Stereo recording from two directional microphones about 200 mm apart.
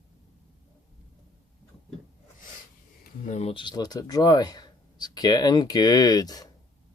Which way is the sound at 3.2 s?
35° left (ahead or behind).